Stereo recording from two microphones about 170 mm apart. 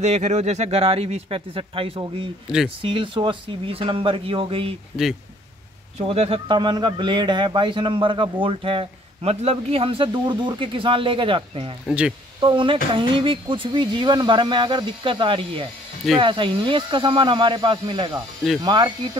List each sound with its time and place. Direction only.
0.0 s speech: 40° right (ahead or behind)
2.4 s speech: 5° right (ahead or behind)
2.8 s speech: 30° right (ahead or behind)
5.9 s a man's voice: 35° right (ahead or behind)